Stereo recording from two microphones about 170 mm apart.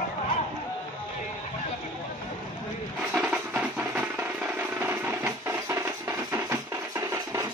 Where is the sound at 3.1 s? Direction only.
5° right (ahead or behind).